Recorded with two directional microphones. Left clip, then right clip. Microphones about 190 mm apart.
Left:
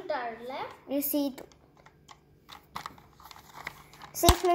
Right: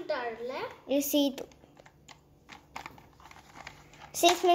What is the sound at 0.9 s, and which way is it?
Speech, 10° right (ahead or behind).